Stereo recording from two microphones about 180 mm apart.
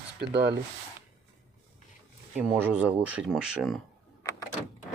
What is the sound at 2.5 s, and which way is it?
Speech, 5° right (ahead or behind).